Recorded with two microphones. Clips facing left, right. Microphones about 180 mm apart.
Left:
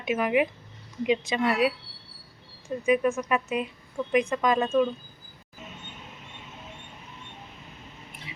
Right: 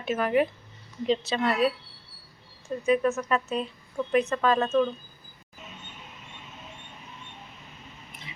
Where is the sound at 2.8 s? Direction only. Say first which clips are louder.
Even; 10° left (ahead or behind).